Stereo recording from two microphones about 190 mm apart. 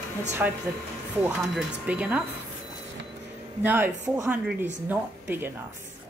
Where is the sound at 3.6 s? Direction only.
10° right (ahead or behind).